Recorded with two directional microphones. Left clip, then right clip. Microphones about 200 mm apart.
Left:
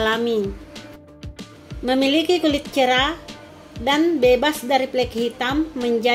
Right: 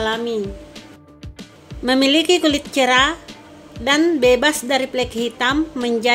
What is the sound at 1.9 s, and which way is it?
A woman's voice, 10° right (ahead or behind).